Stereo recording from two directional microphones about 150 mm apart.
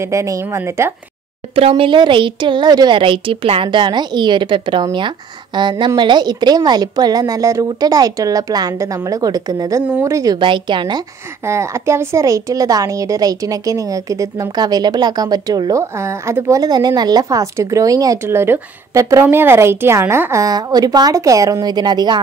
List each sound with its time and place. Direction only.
0.0 s a woman's voice: 20° right (ahead or behind)
1.5 s a woman's voice: 40° right (ahead or behind)
11.4 s a woman's voice: 20° right (ahead or behind)